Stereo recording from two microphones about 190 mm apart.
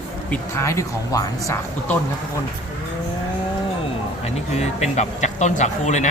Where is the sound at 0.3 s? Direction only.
15° left (ahead or behind).